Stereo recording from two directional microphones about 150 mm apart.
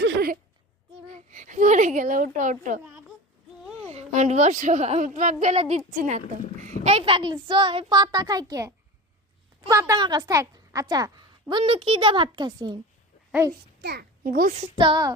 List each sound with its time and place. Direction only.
1.0 s a child's voice: 50° right (ahead or behind)
3.8 s a woman's voice: 50° right (ahead or behind)
6.8 s a woman's voice: 40° right (ahead or behind)
13.8 s a child's voice: 90° right; by 14.5 s 70° right (ahead or behind)
14.8 s a woman's voice: 30° right (ahead or behind)